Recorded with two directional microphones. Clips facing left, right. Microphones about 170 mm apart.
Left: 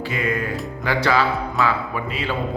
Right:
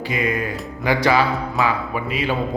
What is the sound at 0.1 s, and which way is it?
Speech, 15° right (ahead or behind).